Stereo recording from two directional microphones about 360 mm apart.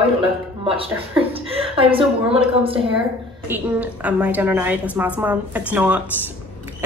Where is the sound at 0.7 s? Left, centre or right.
Centre.